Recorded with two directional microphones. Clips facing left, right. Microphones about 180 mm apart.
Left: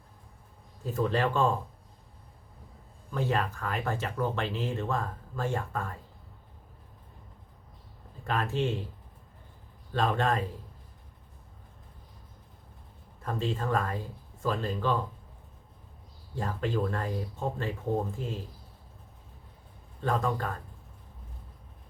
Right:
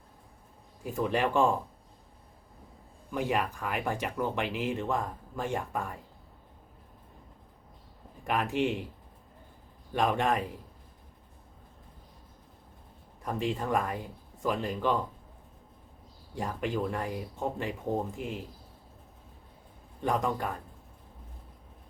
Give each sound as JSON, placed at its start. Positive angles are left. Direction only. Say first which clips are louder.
{"t": 0.9, "sound": "speech", "louder": "left 1 dB", "side_deg": -15}
{"t": 3.1, "sound": "speech", "louder": "even", "side_deg": -15}
{"t": 8.2, "sound": "speech", "louder": "right 1 dB", "side_deg": -15}
{"t": 9.9, "sound": "speech", "louder": "even", "side_deg": -15}
{"t": 13.2, "sound": "speech", "louder": "even", "side_deg": -15}
{"t": 16.3, "sound": "speech", "louder": "left 1 dB", "side_deg": -15}
{"t": 18.2, "sound": "speech", "louder": "even", "side_deg": -15}
{"t": 20.0, "sound": "speech", "louder": "even", "side_deg": -15}